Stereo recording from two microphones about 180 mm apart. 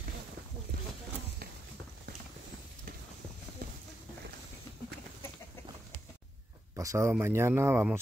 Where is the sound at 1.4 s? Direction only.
55° right (ahead or behind).